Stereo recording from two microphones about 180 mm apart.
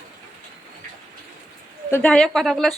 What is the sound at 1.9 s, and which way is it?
Speech, 5° left (ahead or behind).